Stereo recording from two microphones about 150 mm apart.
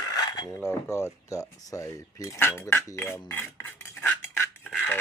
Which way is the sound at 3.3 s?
15° left (ahead or behind).